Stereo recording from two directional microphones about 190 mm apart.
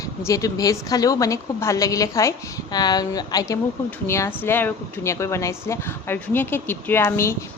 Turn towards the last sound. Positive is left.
turn(degrees=15)  # may be behind; listen again after turning